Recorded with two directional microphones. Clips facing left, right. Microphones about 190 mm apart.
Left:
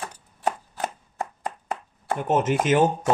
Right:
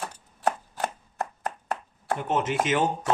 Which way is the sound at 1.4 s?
Centre (ahead or behind).